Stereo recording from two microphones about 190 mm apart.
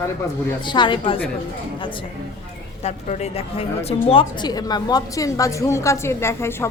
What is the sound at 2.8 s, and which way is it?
A woman's voice, 35° left (ahead or behind).